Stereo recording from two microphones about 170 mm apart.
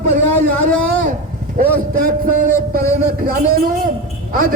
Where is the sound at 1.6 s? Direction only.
55° right (ahead or behind).